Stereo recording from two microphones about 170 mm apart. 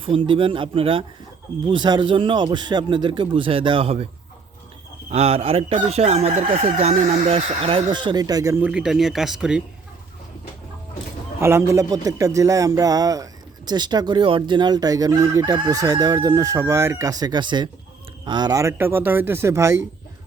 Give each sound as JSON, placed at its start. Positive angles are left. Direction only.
{"t": 0.3, "sound": "speech", "side_deg": -30}
{"t": 1.6, "sound": "chicken", "side_deg": -25}
{"t": 5.0, "sound": "speech", "side_deg": -35}
{"t": 8.6, "sound": "speech", "side_deg": -5}
{"t": 11.3, "sound": "chicken", "side_deg": -15}
{"t": 18.3, "sound": "speech", "side_deg": -25}